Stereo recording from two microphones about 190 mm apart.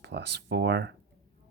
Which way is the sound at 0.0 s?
60° right (ahead or behind).